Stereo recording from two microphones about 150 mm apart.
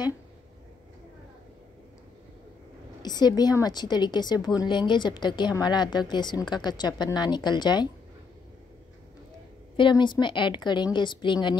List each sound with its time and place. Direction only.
3.0 s a woman's voice: 30° left (ahead or behind)
9.8 s a woman's voice: 30° left (ahead or behind)